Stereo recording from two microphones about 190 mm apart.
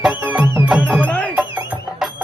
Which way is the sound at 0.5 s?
10° right (ahead or behind).